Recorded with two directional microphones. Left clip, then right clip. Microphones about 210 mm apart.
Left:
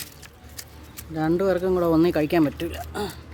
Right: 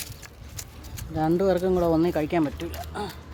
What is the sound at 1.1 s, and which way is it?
Speech, 5° left (ahead or behind).